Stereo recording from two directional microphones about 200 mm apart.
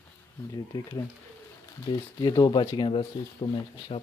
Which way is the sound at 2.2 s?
20° left (ahead or behind).